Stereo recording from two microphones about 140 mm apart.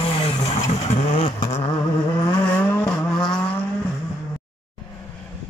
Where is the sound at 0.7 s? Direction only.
50° left (ahead or behind); by 2.4 s 30° left (ahead or behind).